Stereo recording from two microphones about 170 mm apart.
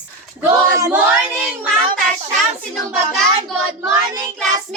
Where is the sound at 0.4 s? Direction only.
20° right (ahead or behind).